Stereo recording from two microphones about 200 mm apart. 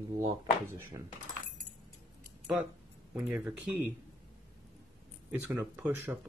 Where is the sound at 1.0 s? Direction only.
15° right (ahead or behind).